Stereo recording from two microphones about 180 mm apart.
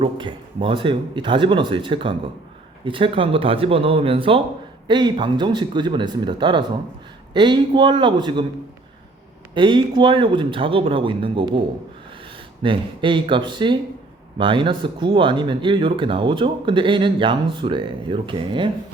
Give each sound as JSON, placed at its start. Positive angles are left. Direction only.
{"t": 0.0, "sound": "speech", "side_deg": -25}
{"t": 9.6, "sound": "speech", "side_deg": -25}
{"t": 12.6, "sound": "speech", "side_deg": -30}